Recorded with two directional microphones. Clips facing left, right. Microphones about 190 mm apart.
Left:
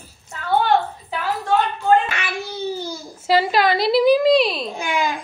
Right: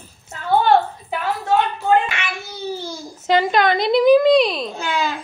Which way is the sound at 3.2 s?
5° left (ahead or behind).